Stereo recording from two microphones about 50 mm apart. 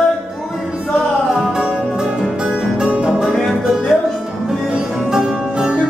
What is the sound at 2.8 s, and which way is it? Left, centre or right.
Music, right.